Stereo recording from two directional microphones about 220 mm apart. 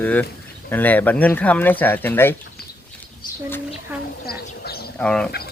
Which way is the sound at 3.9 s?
5° right (ahead or behind).